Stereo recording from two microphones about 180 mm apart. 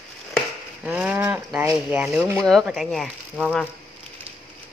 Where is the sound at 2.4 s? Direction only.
5° left (ahead or behind).